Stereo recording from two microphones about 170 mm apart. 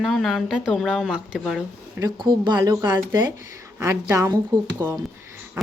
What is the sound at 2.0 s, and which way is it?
A woman's voice, 25° right (ahead or behind).